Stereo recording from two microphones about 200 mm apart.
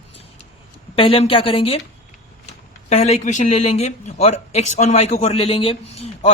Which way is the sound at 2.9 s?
35° left (ahead or behind).